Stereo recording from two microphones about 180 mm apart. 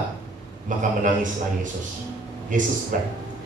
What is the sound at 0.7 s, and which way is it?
Speech, 45° right (ahead or behind).